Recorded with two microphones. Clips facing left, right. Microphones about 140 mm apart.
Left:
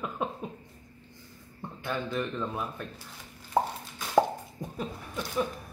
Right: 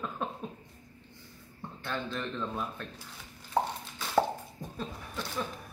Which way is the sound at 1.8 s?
10° left (ahead or behind).